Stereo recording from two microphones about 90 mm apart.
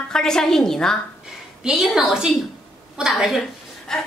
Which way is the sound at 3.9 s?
5° left (ahead or behind).